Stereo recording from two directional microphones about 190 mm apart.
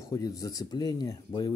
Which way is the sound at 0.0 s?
15° left (ahead or behind).